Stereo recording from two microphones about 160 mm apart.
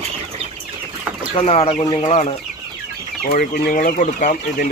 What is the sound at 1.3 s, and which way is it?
Speech, 35° left (ahead or behind).